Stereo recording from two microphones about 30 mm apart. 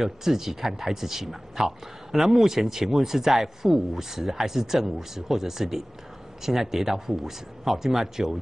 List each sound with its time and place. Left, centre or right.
0.0 s speech: centre